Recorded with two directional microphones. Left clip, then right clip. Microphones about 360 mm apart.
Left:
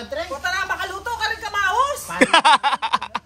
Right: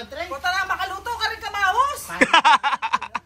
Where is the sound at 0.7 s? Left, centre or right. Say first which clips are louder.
Left 1 dB; centre.